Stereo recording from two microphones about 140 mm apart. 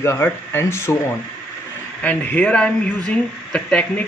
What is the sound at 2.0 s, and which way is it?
Speech, 10° left (ahead or behind).